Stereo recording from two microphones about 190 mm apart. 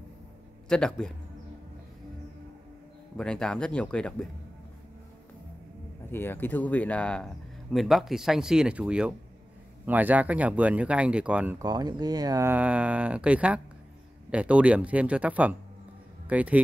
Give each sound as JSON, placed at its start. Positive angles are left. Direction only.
{"t": 0.7, "sound": "speech", "side_deg": 5}
{"t": 3.2, "sound": "speech", "side_deg": 5}
{"t": 6.1, "sound": "speech", "side_deg": 10}
{"t": 11.6, "sound": "speech", "side_deg": -20}